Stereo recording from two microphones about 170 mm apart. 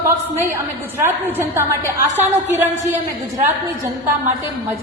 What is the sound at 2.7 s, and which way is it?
Speech, 20° right (ahead or behind).